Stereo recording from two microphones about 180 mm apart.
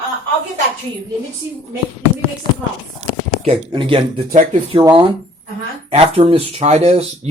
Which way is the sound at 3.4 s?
30° right (ahead or behind).